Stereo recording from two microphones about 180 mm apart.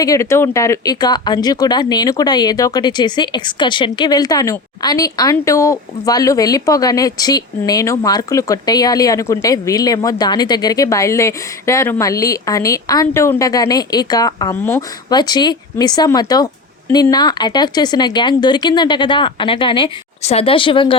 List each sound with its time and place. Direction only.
0.0 s speech: 15° left (ahead or behind)